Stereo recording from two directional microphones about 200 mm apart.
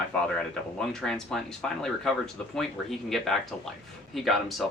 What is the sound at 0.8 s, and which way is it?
Speech, centre (ahead or behind).